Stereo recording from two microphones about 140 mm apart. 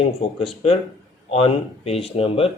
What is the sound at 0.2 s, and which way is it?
Speech, 45° left (ahead or behind).